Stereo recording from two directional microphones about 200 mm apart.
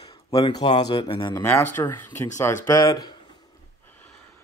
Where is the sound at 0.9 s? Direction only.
25° left (ahead or behind).